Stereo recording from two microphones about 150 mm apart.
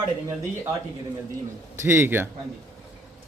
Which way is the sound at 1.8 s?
15° right (ahead or behind).